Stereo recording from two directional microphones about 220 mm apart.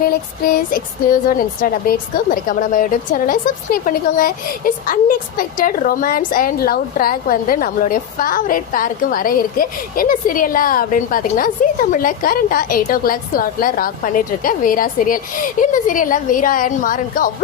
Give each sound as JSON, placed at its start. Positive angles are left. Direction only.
{"t": 0.1, "sound": "speech", "side_deg": 40}